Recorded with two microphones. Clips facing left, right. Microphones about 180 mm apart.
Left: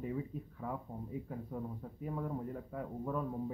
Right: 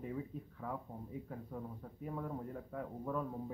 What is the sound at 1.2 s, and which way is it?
A man's voice, 5° left (ahead or behind).